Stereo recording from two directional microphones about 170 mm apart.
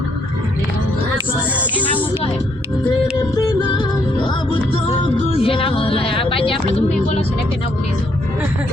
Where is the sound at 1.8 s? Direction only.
10° left (ahead or behind).